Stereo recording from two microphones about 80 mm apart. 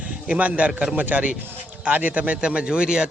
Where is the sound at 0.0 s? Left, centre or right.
Centre.